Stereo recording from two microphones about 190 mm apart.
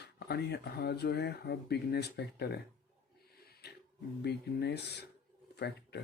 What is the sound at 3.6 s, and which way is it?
Music, 60° left (ahead or behind).